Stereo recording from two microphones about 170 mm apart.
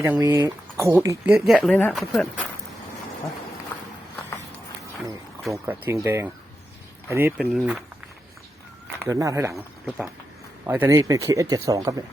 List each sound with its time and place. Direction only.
0.0 s speech: 15° right (ahead or behind)
1.3 s speech: centre (ahead or behind)
5.5 s speech: 15° right (ahead or behind)
9.0 s speech: 20° right (ahead or behind)
10.7 s speech: 15° right (ahead or behind)